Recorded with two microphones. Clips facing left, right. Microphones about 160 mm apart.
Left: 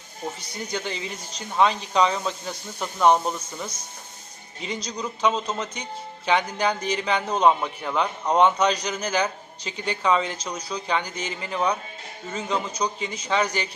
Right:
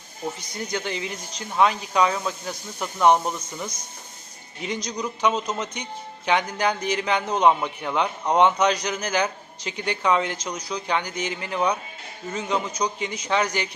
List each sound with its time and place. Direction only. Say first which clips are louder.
0.7 s a man's voice: right 1 dB; 15° right (ahead or behind)
7.6 s a man's voice: right 1 dB; 5° left (ahead or behind)
7.9 s a man's voice: even; 15° right (ahead or behind)